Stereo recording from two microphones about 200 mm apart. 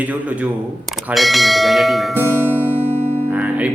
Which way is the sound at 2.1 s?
10° right (ahead or behind).